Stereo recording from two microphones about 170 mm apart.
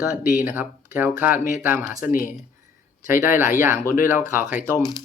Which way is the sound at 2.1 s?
50° left (ahead or behind).